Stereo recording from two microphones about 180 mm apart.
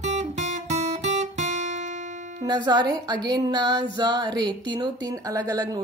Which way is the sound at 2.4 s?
25° right (ahead or behind).